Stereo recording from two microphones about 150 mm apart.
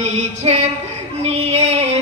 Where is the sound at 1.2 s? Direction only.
45° right (ahead or behind).